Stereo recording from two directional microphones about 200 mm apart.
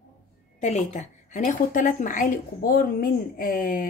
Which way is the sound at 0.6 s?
35° left (ahead or behind).